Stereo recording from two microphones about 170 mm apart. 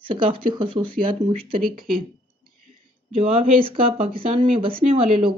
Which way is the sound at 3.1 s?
35° right (ahead or behind).